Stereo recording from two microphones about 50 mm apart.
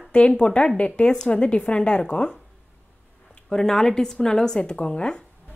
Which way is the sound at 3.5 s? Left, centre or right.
Centre.